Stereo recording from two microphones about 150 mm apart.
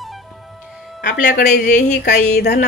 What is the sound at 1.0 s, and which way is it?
Speech, 65° left (ahead or behind).